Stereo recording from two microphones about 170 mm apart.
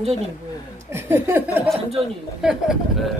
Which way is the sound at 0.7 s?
15° right (ahead or behind).